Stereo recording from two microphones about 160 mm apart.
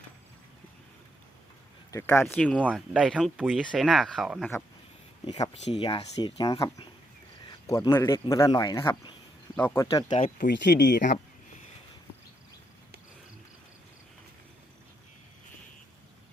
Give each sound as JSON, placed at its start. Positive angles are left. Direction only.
{"t": 1.9, "sound": "speech", "side_deg": 15}
{"t": 2.2, "sound": "speech", "side_deg": 5}
{"t": 2.6, "sound": "speech", "side_deg": -5}
{"t": 5.2, "sound": "speech", "side_deg": 25}
{"t": 10.1, "sound": "speech", "side_deg": 40}
{"t": 10.3, "sound": "speech", "side_deg": 75}